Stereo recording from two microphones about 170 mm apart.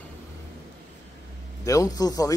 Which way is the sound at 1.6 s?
20° left (ahead or behind).